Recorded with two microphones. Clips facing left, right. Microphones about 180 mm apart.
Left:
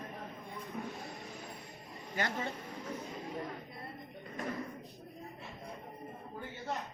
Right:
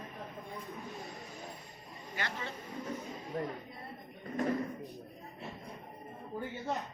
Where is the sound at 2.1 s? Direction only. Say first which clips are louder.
Left 4 dB; 45° left (ahead or behind).